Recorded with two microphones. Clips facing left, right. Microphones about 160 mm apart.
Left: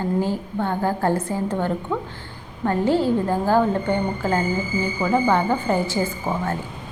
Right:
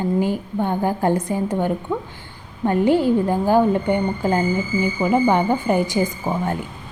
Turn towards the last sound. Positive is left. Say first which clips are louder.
# right 2 dB
turn(degrees=-15)  # may be behind; listen again after turning